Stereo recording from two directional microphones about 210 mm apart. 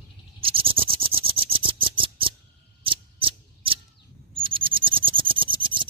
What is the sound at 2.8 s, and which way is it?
Scissors, 25° right (ahead or behind).